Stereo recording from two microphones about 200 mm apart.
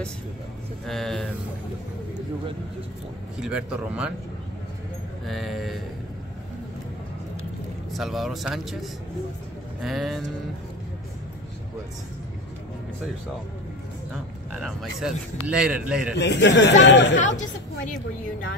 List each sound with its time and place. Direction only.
0.8 s speech: centre (ahead or behind)
3.3 s speech: 5° right (ahead or behind)
5.2 s speech: centre (ahead or behind)
7.9 s speech: centre (ahead or behind)
14.5 s speech: centre (ahead or behind)
16.2 s speech: 60° left (ahead or behind)
17.2 s speech: 40° left (ahead or behind)